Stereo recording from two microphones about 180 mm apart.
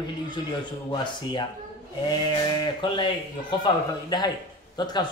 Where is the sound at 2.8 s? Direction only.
25° left (ahead or behind).